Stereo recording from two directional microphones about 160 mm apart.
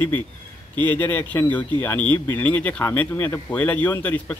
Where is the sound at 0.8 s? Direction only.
10° left (ahead or behind).